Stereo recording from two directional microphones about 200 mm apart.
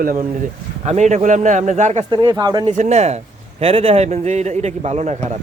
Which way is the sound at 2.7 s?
35° right (ahead or behind).